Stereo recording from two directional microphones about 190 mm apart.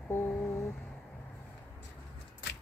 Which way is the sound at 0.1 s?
10° left (ahead or behind).